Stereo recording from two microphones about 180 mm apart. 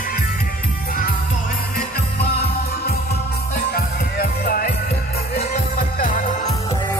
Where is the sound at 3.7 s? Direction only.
55° left (ahead or behind).